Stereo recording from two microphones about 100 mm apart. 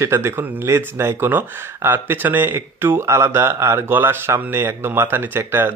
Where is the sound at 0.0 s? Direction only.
25° right (ahead or behind).